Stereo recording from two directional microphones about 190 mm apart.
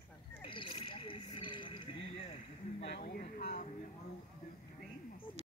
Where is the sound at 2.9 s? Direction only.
55° left (ahead or behind).